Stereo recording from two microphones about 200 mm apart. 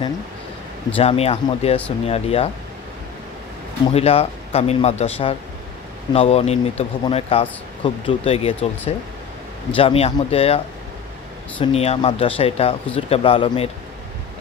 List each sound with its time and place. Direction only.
0.9 s speech: 30° left (ahead or behind)
3.9 s speech: 30° left (ahead or behind)
11.6 s speech: 30° left (ahead or behind)